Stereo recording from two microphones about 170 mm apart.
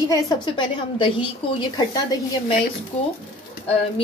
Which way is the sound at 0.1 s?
25° left (ahead or behind).